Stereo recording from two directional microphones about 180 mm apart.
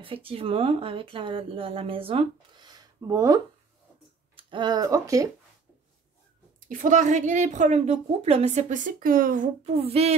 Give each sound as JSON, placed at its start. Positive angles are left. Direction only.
{"t": 0.0, "sound": "speech", "side_deg": -30}
{"t": 4.4, "sound": "speech", "side_deg": -25}
{"t": 6.7, "sound": "a woman's voice", "side_deg": -45}